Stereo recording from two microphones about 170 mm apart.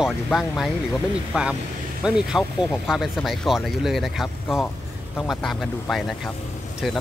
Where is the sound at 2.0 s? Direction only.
5° right (ahead or behind).